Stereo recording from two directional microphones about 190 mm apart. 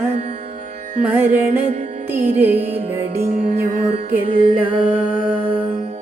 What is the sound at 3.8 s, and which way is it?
Music, 35° right (ahead or behind).